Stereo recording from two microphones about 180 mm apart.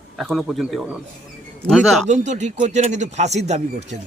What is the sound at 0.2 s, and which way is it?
Speech, centre (ahead or behind).